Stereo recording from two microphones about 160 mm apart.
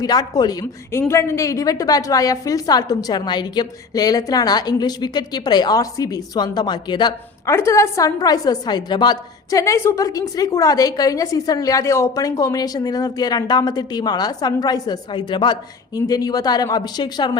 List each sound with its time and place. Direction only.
0.0 s a woman's voice: 25° left (ahead or behind)